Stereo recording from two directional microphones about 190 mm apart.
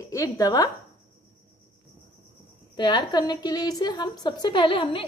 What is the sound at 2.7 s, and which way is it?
A woman's voice, 25° left (ahead or behind).